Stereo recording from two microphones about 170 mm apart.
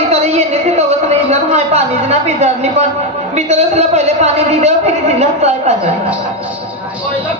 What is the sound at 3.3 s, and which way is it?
A man's voice, 40° right (ahead or behind).